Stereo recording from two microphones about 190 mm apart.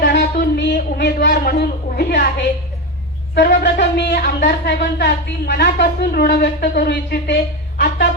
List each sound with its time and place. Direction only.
0.0 s a sound: 55° left (ahead or behind)
3.3 s speech: 65° left (ahead or behind)
4.2 s speech: 50° left (ahead or behind)